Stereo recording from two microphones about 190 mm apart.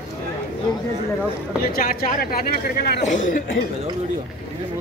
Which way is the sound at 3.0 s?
40° left (ahead or behind).